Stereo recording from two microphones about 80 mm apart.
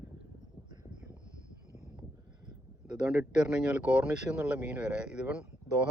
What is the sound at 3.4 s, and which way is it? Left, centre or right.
Speech, centre.